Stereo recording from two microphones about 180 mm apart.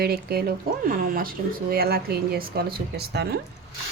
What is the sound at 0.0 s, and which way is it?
Speech, 60° right (ahead or behind).